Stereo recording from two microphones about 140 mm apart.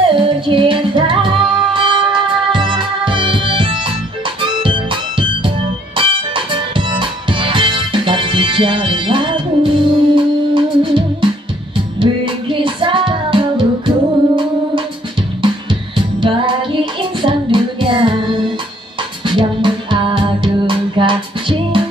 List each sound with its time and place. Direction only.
0.1 s music: 35° right (ahead or behind)
15.4 s music: 35° right (ahead or behind)